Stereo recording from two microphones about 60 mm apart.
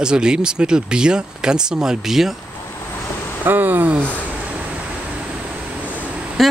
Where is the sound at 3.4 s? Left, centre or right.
Right.